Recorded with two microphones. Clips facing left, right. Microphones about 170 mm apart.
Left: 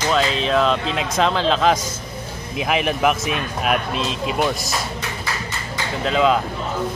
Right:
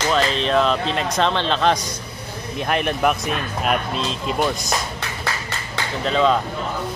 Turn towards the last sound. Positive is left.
turn(degrees=5)  # may be behind; listen again after turning